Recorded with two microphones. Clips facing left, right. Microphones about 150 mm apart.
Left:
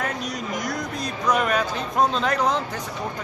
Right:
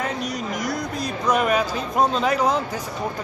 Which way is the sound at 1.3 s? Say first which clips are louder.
Right 2 dB; 5° right (ahead or behind).